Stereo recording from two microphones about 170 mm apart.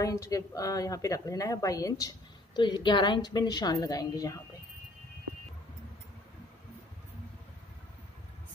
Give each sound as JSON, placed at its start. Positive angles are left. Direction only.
{"t": 0.0, "sound": "a woman's voice", "side_deg": 20}